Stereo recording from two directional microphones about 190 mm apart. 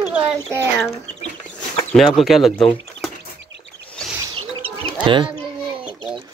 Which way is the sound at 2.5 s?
25° left (ahead or behind).